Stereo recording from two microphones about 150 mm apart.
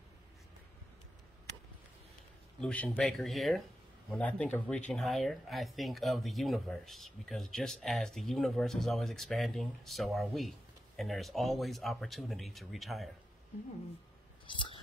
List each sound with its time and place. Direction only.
2.6 s speech: 10° left (ahead or behind)
14.4 s whispering: 35° left (ahead or behind)